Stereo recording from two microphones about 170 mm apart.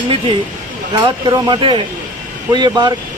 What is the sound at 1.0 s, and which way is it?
Speech, 30° right (ahead or behind).